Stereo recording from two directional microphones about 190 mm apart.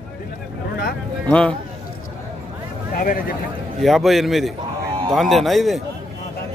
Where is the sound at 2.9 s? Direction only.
45° left (ahead or behind).